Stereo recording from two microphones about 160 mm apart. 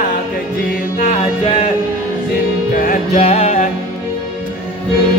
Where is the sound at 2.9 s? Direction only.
40° left (ahead or behind).